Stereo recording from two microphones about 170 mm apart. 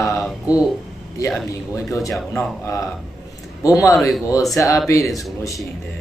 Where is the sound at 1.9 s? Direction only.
20° left (ahead or behind).